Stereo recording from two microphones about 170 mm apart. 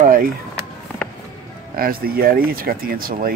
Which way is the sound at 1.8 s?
60° right (ahead or behind).